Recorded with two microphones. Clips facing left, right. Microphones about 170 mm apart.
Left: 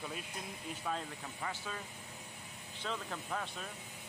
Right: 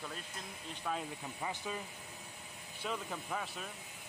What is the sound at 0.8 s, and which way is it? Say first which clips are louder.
Speech: right 1 dB; 5° right (ahead or behind).